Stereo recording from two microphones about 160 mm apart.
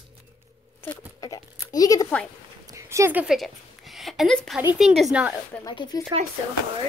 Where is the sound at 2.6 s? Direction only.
20° right (ahead or behind); by 4.6 s centre (ahead or behind).